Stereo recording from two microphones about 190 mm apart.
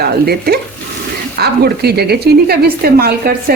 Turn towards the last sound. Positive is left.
turn(degrees=-55)  # may be behind; listen again after turning